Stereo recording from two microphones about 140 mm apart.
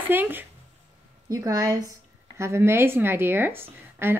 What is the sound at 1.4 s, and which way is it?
A woman's voice, 20° right (ahead or behind).